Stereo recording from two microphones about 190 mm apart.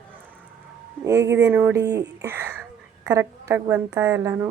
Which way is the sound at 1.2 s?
70° right (ahead or behind).